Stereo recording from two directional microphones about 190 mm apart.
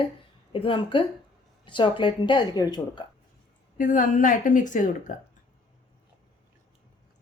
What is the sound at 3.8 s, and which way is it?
A woman's voice, 45° left (ahead or behind).